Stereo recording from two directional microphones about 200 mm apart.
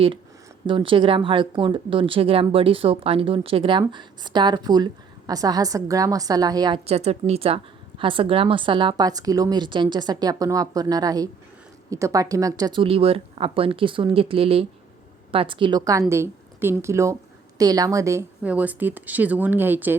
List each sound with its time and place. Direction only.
0.7 s speech: 25° right (ahead or behind)
6.8 s speech: 35° right (ahead or behind); by 20.0 s 10° right (ahead or behind)